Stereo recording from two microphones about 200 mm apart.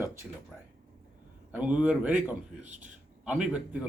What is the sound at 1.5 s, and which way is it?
Speech, 5° right (ahead or behind).